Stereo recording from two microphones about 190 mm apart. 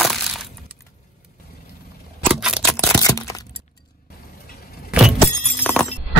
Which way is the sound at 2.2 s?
5° right (ahead or behind).